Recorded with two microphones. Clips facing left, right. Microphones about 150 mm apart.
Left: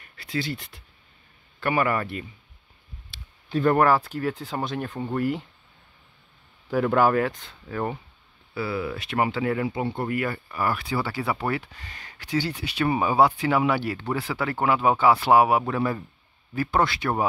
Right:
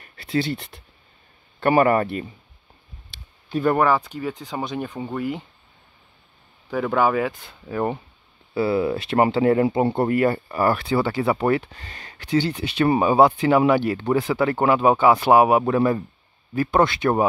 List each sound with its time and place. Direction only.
0.0 s a sound: 25° right (ahead or behind)
1.6 s speech: 35° right (ahead or behind)
3.6 s speech: centre (ahead or behind)
6.7 s speech: centre (ahead or behind)
7.6 s speech: 25° right (ahead or behind)